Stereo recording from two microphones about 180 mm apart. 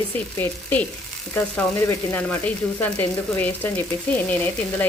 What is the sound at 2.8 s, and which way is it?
Speech, 10° left (ahead or behind).